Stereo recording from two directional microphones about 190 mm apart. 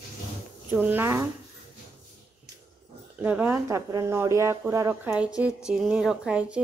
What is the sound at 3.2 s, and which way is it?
A woman's voice, 10° right (ahead or behind).